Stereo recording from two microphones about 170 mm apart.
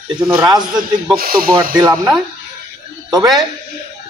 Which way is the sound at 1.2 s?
60° right (ahead or behind).